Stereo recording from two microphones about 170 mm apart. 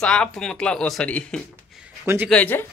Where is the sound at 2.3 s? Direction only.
10° left (ahead or behind).